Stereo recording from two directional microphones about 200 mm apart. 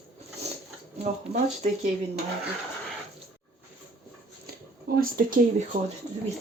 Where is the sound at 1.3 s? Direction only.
30° right (ahead or behind).